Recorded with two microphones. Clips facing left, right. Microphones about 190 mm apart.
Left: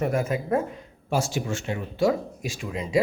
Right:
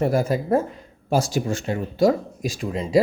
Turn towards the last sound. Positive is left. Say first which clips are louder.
# right 5 dB
turn(degrees=-35)  # may be behind; listen again after turning